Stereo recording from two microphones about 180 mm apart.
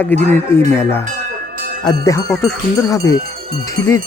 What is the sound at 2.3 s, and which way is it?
Speech, centre (ahead or behind).